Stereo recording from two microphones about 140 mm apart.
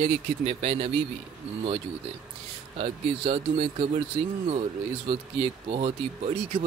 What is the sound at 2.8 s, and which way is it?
Speech, 40° right (ahead or behind).